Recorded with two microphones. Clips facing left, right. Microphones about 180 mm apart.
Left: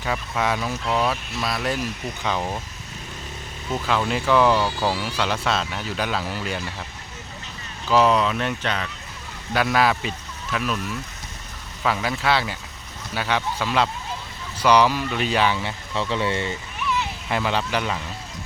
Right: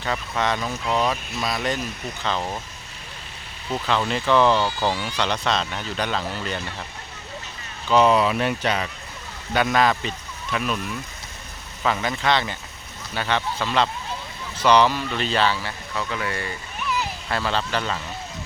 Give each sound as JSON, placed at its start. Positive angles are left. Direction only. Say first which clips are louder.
{"t": 0.0, "sound": "speech", "louder": "even", "side_deg": 5}
{"t": 3.7, "sound": "speech", "louder": "even", "side_deg": 5}
{"t": 7.9, "sound": "speech", "louder": "right 1 dB", "side_deg": 0}
{"t": 9.5, "sound": "speech", "louder": "even", "side_deg": 0}
{"t": 17.2, "sound": "speech", "louder": "left 2 dB", "side_deg": 15}